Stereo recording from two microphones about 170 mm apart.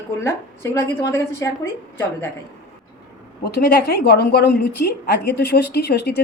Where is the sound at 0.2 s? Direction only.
15° left (ahead or behind).